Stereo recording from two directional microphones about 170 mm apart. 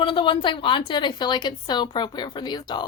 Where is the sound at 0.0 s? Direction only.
30° left (ahead or behind).